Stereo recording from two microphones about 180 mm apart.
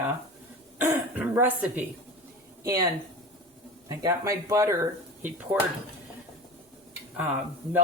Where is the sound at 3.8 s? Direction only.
20° right (ahead or behind).